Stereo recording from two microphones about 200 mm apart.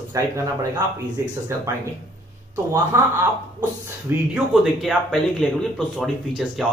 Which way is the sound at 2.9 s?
10° right (ahead or behind).